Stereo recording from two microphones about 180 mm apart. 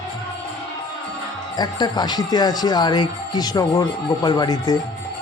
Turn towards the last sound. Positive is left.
turn(degrees=20)  # may be behind; listen again after turning